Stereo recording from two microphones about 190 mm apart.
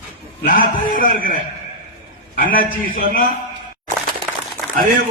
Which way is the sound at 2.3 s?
50° left (ahead or behind).